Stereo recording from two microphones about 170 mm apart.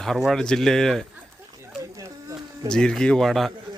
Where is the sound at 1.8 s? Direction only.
20° right (ahead or behind).